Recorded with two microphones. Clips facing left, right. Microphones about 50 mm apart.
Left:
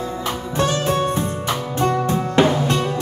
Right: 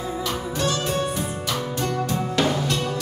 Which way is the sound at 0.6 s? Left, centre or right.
Left.